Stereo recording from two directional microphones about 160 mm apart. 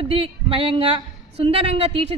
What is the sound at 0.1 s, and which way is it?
A woman's voice, 35° right (ahead or behind).